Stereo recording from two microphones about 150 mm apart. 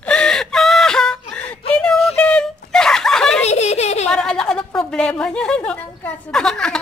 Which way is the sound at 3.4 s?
45° left (ahead or behind).